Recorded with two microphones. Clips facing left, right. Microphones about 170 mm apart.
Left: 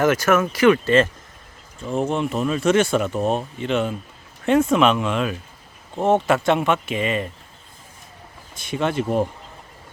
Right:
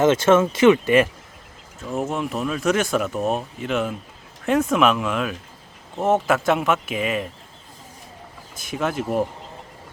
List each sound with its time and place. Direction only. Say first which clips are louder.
0.0 s speech: right 2 dB; 25° right (ahead or behind)
1.9 s speech: left 3 dB; 5° right (ahead or behind)
8.5 s speech: left 2 dB; centre (ahead or behind)